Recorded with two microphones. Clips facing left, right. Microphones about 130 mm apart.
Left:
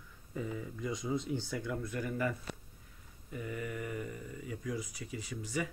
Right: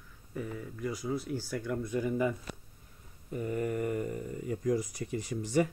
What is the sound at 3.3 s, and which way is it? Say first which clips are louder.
Speech: right 7 dB; 40° right (ahead or behind).